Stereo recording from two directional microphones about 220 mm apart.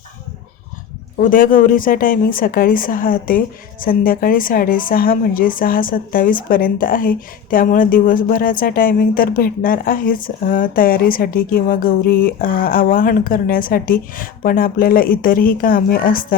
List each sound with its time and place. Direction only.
1.2 s speech: 40° left (ahead or behind)